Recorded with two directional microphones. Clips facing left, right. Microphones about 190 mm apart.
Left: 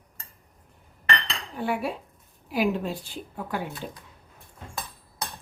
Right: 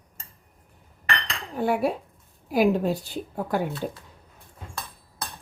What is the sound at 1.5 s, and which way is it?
Cutlery, 45° right (ahead or behind).